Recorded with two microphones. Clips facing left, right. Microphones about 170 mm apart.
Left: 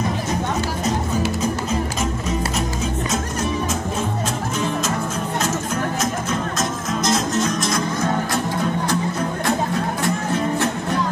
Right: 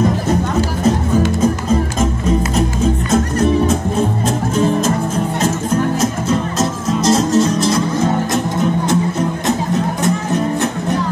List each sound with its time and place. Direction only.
3.1 s music: 60° right (ahead or behind)
4.6 s music: 35° right (ahead or behind)
6.6 s music: 30° right (ahead or behind)